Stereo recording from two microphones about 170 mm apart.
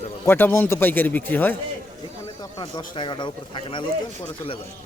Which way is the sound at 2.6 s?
30° left (ahead or behind).